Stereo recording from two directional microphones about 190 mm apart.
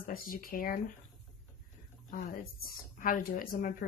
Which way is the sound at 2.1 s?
50° left (ahead or behind).